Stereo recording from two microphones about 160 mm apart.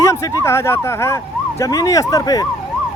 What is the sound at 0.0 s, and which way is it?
Speech, 20° left (ahead or behind).